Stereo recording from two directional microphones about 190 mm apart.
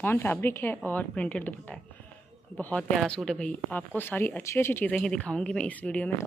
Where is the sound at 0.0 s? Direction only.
10° left (ahead or behind).